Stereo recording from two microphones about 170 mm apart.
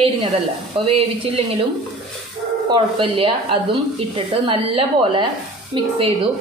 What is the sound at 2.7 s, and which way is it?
A woman's voice, 30° right (ahead or behind).